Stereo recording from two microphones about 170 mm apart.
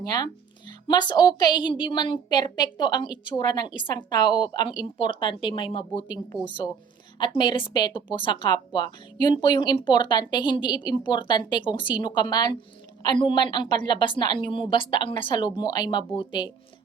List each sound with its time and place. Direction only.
0.0 s a woman's voice: 25° left (ahead or behind)